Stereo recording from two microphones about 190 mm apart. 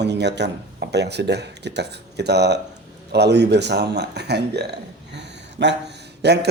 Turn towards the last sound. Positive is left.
turn(degrees=-60)  # may be behind; listen again after turning